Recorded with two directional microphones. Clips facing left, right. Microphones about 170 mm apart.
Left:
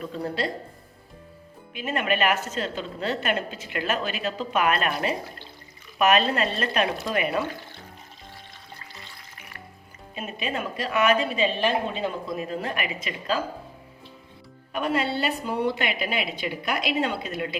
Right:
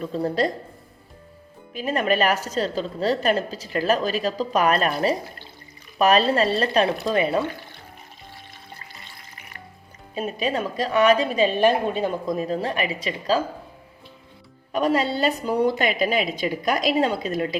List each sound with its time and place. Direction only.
0.0 s a woman's voice: 35° right (ahead or behind)
1.7 s a woman's voice: 35° right (ahead or behind)
10.2 s a woman's voice: 35° right (ahead or behind)
14.7 s a woman's voice: 40° right (ahead or behind)